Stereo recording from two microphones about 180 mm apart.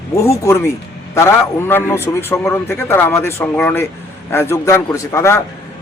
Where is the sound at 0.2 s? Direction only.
15° left (ahead or behind).